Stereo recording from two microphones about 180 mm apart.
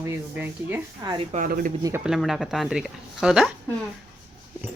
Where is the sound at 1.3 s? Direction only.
50° right (ahead or behind).